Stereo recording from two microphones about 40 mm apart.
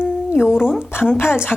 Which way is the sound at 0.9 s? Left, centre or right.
Left.